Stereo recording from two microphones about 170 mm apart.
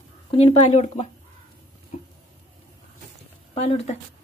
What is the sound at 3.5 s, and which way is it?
Speech, 35° left (ahead or behind).